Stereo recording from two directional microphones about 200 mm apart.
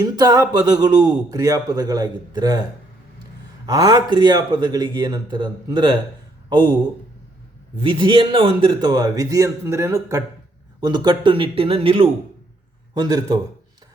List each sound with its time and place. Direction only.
0.0 s speech: 20° right (ahead or behind)
3.7 s speech: 15° right (ahead or behind)
7.8 s speech: 25° right (ahead or behind)